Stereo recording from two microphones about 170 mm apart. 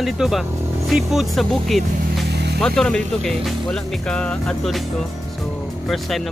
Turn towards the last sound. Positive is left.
turn(degrees=0)  # may be behind; listen again after turning